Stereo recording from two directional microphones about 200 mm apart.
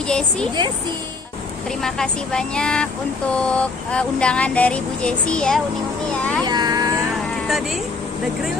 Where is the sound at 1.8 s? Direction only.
5° left (ahead or behind).